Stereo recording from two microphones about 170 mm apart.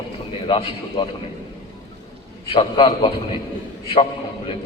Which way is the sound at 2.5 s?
30° left (ahead or behind).